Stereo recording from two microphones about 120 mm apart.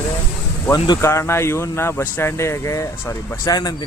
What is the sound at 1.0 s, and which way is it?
Speech, 25° left (ahead or behind).